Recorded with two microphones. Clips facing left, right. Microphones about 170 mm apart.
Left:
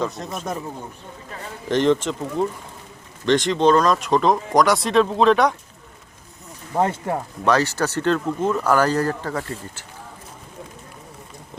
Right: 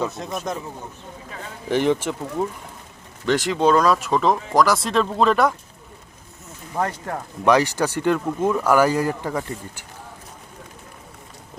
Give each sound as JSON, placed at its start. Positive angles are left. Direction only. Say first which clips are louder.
{"t": 0.0, "sound": "speech", "louder": "even", "side_deg": -5}
{"t": 1.6, "sound": "speech", "louder": "left 2 dB", "side_deg": -10}
{"t": 6.7, "sound": "speech", "louder": "left 4 dB", "side_deg": 25}
{"t": 7.4, "sound": "speech", "louder": "right 2 dB", "side_deg": -15}